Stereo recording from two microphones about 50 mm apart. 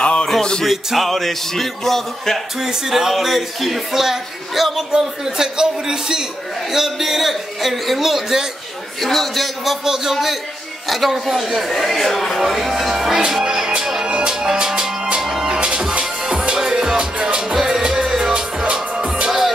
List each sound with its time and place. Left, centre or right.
0.2 s music: centre
0.7 s speech: centre
2.7 s speech: centre
9.0 s speech: centre
13.9 s music: centre